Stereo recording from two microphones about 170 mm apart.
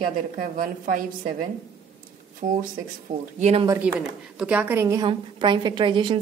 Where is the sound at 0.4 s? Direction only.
55° right (ahead or behind).